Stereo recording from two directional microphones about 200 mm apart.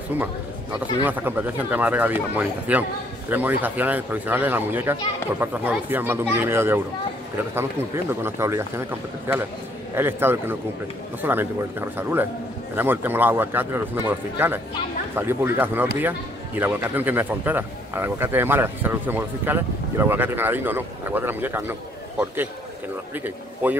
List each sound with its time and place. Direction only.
1.0 s a man's voice: 10° right (ahead or behind)